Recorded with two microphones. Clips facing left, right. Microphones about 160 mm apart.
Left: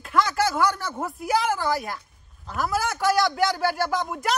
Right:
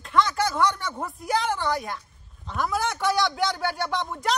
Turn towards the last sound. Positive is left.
turn(degrees=5)  # may be behind; listen again after turning